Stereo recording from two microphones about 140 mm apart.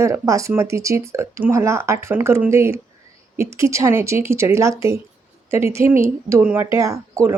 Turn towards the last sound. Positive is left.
turn(degrees=-25)  # may be behind; listen again after turning